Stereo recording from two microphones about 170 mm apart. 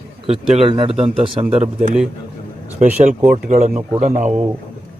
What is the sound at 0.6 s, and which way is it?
Speech, 35° right (ahead or behind).